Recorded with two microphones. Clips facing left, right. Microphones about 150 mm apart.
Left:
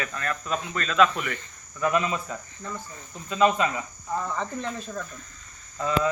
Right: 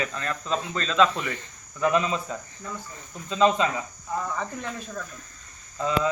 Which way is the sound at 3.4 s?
25° right (ahead or behind).